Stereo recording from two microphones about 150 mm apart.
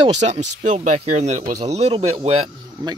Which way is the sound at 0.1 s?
50° right (ahead or behind).